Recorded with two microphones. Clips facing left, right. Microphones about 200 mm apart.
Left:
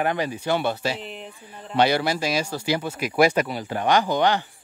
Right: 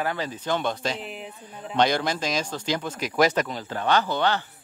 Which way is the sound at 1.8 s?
10° left (ahead or behind).